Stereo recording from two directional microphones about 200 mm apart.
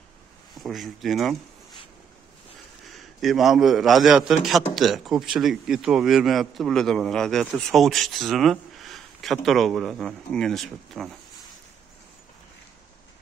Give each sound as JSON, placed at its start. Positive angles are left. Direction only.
{"t": 0.6, "sound": "a man's voice", "side_deg": 0}
{"t": 2.8, "sound": "a man's voice", "side_deg": 0}